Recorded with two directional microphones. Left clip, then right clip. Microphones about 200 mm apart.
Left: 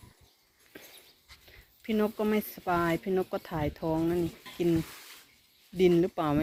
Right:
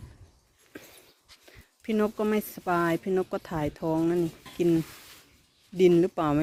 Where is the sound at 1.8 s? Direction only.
40° right (ahead or behind).